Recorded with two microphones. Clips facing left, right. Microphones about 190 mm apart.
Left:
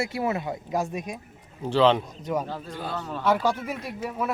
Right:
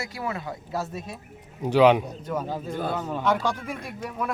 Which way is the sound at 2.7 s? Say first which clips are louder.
Right 7 dB; 50° right (ahead or behind).